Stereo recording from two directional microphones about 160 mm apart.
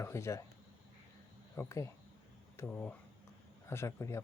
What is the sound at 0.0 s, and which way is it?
Speech, 15° left (ahead or behind).